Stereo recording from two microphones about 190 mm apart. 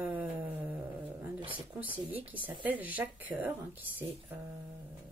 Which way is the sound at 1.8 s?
10° right (ahead or behind).